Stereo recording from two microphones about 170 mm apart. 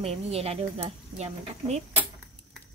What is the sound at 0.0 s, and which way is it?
Speech, 35° right (ahead or behind).